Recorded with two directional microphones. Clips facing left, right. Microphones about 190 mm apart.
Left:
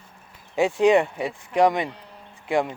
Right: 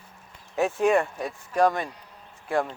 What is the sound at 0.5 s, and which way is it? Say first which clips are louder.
Speech: left 4 dB; 15° left (ahead or behind).